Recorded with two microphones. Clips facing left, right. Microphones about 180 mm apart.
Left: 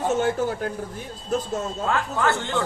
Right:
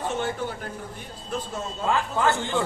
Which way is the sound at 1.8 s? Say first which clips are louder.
Right 1 dB; 15° right (ahead or behind).